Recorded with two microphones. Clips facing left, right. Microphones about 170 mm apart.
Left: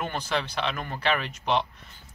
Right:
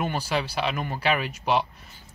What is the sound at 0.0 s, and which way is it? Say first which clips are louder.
A man's voice: right 2 dB; 10° right (ahead or behind).